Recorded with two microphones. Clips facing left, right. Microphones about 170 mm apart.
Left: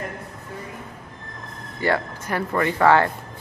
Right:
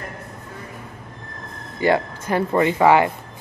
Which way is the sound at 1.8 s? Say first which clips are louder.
Right 4 dB; 20° right (ahead or behind).